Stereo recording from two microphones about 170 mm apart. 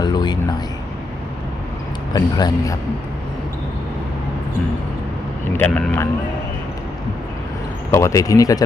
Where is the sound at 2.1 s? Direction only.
25° left (ahead or behind).